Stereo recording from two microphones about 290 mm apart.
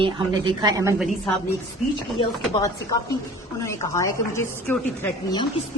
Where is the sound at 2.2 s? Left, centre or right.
Centre.